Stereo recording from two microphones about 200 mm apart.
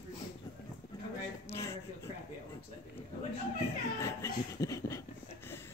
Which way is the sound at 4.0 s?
15° left (ahead or behind).